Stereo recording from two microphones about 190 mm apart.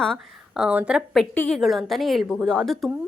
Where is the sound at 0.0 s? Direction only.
Centre (ahead or behind).